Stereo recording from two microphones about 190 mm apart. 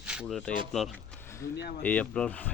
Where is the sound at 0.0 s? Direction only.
5° right (ahead or behind).